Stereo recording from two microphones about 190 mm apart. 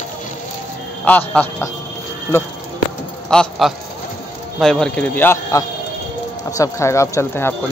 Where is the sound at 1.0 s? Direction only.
10° left (ahead or behind).